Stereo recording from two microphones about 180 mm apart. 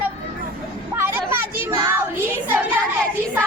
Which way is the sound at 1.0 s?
10° right (ahead or behind).